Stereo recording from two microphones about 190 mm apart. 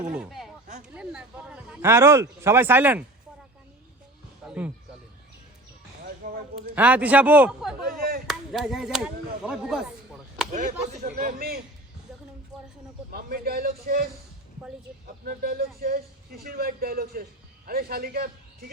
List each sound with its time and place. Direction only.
0.1 s speech: 5° right (ahead or behind)
4.4 s speech: 10° right (ahead or behind)
6.2 s a sound: 45° right (ahead or behind)
6.7 s speech: 10° right (ahead or behind)
7.8 s chop: 55° right (ahead or behind)
8.3 s speech: centre (ahead or behind)
10.5 s speech: 40° right (ahead or behind)
13.1 s a man's voice: 50° right (ahead or behind)